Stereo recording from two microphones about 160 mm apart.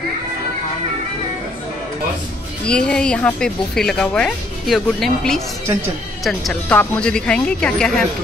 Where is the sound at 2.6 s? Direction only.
5° left (ahead or behind).